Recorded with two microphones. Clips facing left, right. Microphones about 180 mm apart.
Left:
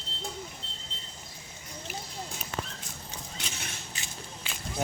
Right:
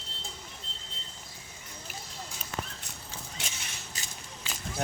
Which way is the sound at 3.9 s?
40° right (ahead or behind).